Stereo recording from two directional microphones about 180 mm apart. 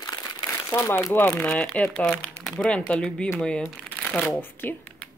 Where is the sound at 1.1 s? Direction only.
10° left (ahead or behind).